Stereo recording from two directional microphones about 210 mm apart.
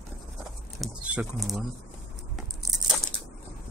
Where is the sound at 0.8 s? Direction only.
5° right (ahead or behind).